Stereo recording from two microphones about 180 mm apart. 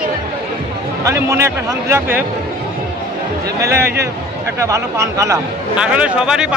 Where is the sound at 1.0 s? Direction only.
15° right (ahead or behind).